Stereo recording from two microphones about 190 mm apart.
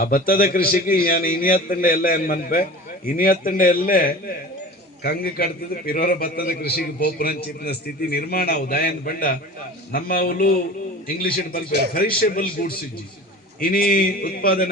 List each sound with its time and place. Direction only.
0.0 s a man's voice: 50° left (ahead or behind)